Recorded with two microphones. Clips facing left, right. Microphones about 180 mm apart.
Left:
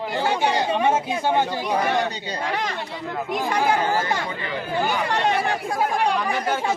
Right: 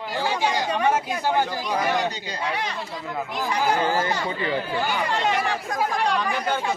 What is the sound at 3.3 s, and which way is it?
Speech, 50° left (ahead or behind).